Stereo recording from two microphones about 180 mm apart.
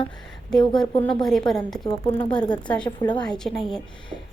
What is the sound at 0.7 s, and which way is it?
A woman's voice, 5° left (ahead or behind).